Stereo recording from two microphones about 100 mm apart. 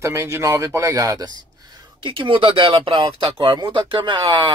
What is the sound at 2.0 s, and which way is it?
Speech, 60° right (ahead or behind).